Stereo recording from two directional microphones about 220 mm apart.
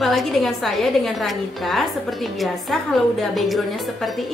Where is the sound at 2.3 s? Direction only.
Centre (ahead or behind).